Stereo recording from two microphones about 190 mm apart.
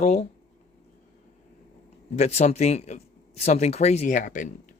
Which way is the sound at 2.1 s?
35° left (ahead or behind).